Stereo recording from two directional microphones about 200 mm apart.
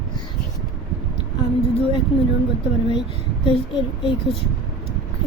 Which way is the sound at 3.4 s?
25° left (ahead or behind).